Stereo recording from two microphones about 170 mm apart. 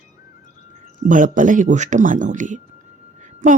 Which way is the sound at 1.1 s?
50° right (ahead or behind).